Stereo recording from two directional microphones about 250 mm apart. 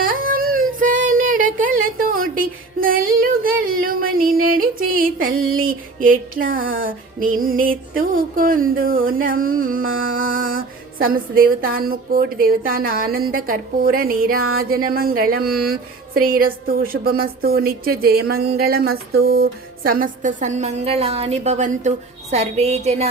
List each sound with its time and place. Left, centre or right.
0.0 s a sound: right
1.5 s music: right
5.2 s speech: right